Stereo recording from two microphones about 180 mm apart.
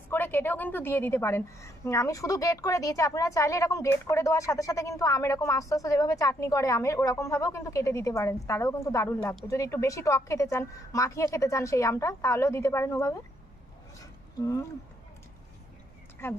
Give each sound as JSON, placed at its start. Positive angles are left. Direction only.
{"t": 0.1, "sound": "a woman's voice", "side_deg": 10}
{"t": 13.9, "sound": "a sound", "side_deg": 15}
{"t": 16.2, "sound": "a woman's voice", "side_deg": 15}